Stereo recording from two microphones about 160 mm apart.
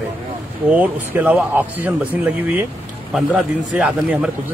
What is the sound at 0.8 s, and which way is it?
Speech, 10° right (ahead or behind).